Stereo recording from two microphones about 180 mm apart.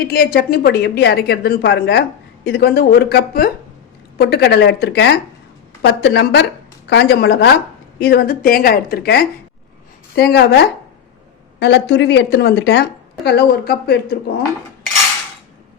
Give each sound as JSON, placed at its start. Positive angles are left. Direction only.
{"t": 0.0, "sound": "speech", "side_deg": 60}